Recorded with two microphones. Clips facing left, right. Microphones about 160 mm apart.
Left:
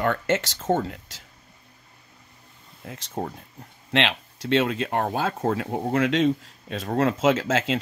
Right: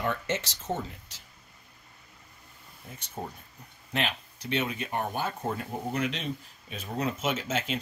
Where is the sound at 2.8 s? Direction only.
90° left.